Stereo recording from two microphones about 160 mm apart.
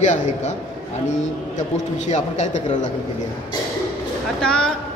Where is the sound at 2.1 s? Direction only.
50° left (ahead or behind).